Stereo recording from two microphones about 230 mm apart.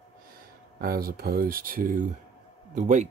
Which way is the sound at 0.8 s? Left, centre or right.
Right.